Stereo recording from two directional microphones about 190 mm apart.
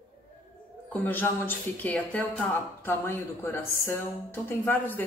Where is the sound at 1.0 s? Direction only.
10° left (ahead or behind).